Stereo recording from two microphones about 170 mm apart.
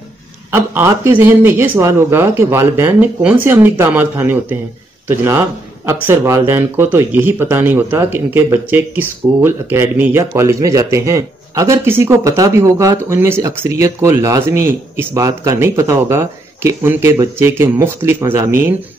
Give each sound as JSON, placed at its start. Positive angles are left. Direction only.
{"t": 0.5, "sound": "a man's voice", "side_deg": -15}